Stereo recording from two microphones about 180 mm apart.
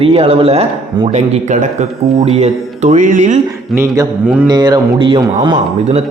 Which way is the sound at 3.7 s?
20° right (ahead or behind).